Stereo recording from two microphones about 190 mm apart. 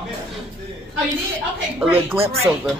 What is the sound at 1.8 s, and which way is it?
Speech, 10° right (ahead or behind).